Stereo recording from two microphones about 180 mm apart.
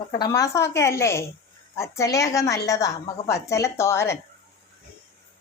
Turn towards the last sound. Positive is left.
turn(degrees=15)  # may be behind; listen again after turning